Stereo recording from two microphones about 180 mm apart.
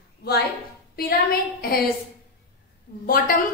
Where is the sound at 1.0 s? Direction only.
55° left (ahead or behind).